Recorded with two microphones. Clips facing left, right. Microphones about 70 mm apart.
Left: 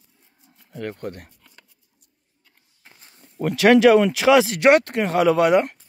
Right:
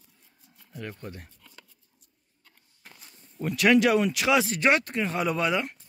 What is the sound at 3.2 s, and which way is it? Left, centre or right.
Speech, left.